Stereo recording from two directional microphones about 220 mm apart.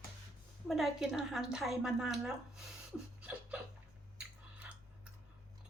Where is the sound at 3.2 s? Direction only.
5° right (ahead or behind).